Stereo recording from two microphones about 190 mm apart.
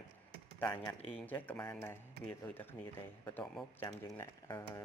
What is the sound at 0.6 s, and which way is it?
Speech, 10° left (ahead or behind).